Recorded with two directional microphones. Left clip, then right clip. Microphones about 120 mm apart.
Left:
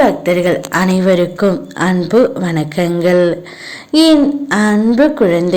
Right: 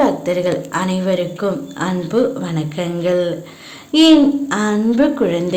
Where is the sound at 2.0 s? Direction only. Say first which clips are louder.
Left 5 dB; 50° left (ahead or behind).